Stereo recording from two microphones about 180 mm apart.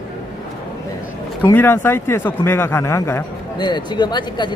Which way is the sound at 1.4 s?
10° left (ahead or behind).